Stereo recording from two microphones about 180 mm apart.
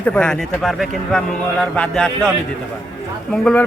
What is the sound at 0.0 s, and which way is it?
A man's voice, 5° left (ahead or behind).